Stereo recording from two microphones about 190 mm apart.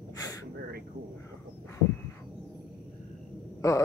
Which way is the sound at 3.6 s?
15° left (ahead or behind).